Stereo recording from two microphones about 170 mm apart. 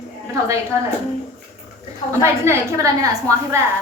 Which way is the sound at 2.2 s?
15° right (ahead or behind).